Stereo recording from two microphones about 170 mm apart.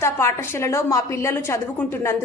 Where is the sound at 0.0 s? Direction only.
15° left (ahead or behind).